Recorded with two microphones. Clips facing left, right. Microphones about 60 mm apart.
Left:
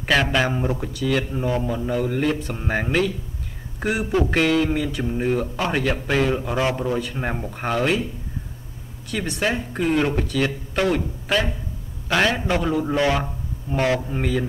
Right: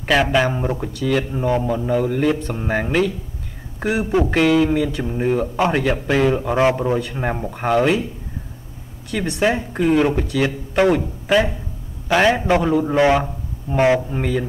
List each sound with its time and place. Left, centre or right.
0.0 s speech: centre
4.0 s speech: centre
4.3 s speech: centre
6.5 s speech: right
7.0 s speech: centre
9.1 s speech: centre
12.9 s speech: centre
14.1 s speech: centre